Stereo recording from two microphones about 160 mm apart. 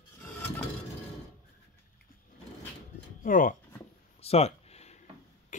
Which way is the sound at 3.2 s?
55° left (ahead or behind).